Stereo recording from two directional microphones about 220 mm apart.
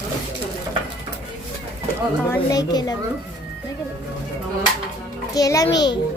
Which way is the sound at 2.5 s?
15° left (ahead or behind).